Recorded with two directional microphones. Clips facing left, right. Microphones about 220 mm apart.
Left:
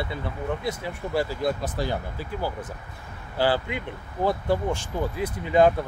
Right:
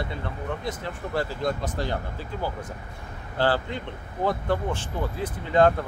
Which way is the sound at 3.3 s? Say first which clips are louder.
Left 1 dB; 10° left (ahead or behind).